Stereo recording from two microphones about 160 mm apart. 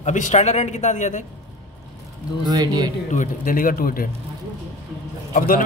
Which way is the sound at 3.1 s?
55° left (ahead or behind).